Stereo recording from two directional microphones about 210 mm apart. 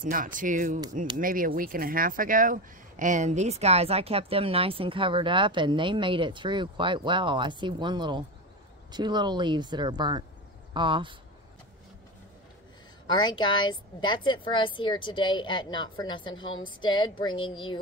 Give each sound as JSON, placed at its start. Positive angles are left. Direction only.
{"t": 0.0, "sound": "speech", "side_deg": -40}
{"t": 13.0, "sound": "a woman's voice", "side_deg": 20}